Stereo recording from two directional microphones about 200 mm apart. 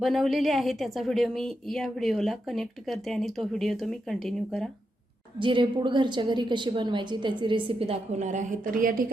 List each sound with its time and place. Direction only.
0.0 s a woman's voice: centre (ahead or behind)
5.4 s a woman's voice: 25° right (ahead or behind); by 9.0 s 45° right (ahead or behind)